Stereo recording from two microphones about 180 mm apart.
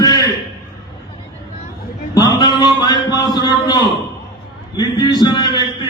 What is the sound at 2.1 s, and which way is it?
A man's voice, 25° left (ahead or behind).